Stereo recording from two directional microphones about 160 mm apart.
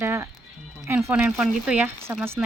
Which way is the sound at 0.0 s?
15° right (ahead or behind).